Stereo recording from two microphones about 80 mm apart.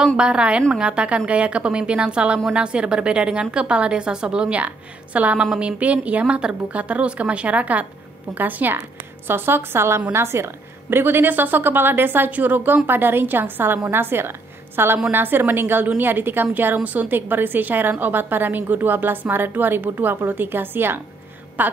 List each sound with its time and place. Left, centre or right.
0.2 s a woman's voice: centre